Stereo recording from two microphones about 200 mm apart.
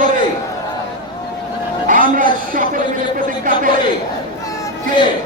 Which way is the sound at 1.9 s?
45° right (ahead or behind).